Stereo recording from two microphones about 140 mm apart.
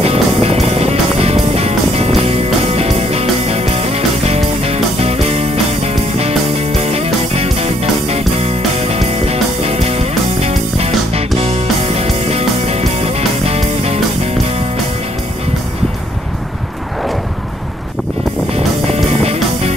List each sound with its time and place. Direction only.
0.0 s music: 45° right (ahead or behind)
18.5 s music: 45° right (ahead or behind)